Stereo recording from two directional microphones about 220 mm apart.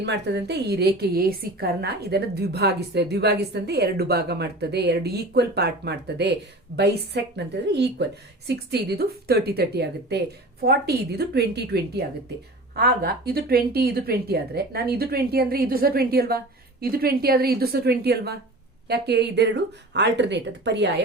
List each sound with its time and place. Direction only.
0.0 s a woman's voice: 50° right (ahead or behind)